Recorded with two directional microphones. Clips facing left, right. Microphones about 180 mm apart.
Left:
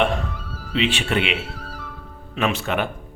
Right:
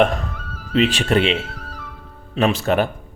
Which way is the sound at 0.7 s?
40° right (ahead or behind).